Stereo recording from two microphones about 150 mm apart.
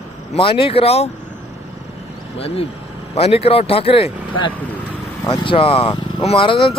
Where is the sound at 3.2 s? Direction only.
40° left (ahead or behind).